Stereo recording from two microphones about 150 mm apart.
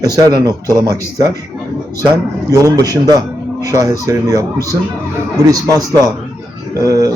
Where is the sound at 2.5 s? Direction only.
20° right (ahead or behind).